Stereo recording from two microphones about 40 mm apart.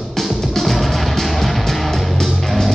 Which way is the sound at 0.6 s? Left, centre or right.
Centre.